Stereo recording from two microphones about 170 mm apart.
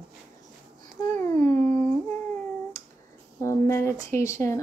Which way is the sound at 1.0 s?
20° left (ahead or behind).